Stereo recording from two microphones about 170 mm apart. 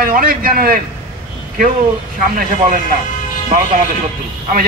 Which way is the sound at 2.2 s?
55° right (ahead or behind).